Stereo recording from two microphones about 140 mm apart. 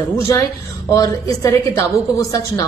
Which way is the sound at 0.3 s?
25° left (ahead or behind).